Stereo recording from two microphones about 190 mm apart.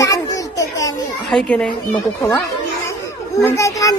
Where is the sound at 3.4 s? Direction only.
15° left (ahead or behind).